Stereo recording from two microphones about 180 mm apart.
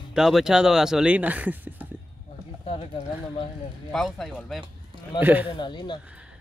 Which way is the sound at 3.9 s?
Centre (ahead or behind).